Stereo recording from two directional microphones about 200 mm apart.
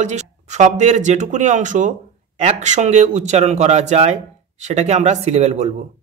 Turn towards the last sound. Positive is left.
turn(degrees=-35)  # may be behind; listen again after turning